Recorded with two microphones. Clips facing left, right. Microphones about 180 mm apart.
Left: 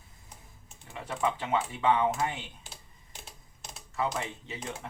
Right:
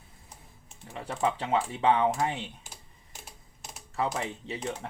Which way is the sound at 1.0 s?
30° right (ahead or behind).